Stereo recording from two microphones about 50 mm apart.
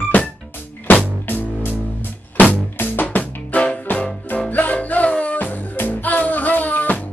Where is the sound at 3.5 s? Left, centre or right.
Left.